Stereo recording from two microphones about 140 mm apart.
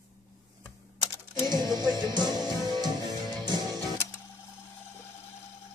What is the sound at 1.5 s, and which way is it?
Music, 30° right (ahead or behind).